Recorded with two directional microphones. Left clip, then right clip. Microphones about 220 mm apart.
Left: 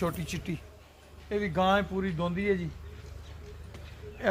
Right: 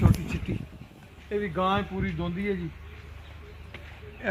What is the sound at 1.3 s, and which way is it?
Speech, 55° left (ahead or behind).